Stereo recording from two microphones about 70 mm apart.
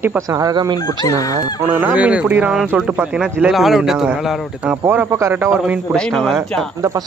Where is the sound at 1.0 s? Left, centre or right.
Left.